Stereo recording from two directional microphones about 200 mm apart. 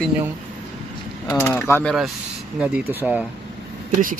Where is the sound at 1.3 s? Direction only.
10° left (ahead or behind).